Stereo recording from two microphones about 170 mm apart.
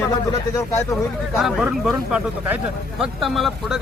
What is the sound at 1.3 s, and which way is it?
Speech, 5° right (ahead or behind).